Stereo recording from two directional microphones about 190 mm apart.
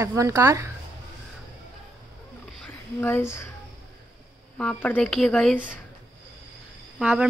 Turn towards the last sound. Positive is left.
turn(degrees=-5)  # may be behind; listen again after turning